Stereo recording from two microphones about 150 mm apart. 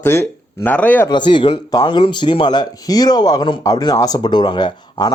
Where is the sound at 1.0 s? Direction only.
30° left (ahead or behind).